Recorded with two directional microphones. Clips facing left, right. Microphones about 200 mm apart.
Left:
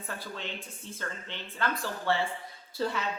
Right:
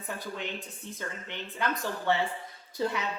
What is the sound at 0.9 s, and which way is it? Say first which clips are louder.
A woman's voice: even; 15° right (ahead or behind).